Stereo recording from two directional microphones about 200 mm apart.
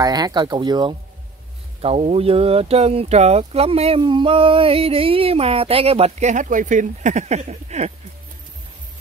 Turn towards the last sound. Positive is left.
turn(degrees=-35)  # may be behind; listen again after turning